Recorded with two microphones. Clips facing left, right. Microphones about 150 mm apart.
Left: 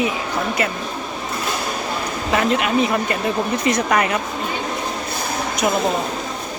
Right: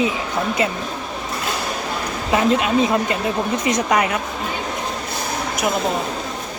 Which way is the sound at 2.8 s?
20° right (ahead or behind).